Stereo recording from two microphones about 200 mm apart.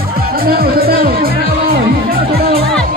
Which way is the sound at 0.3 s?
50° right (ahead or behind).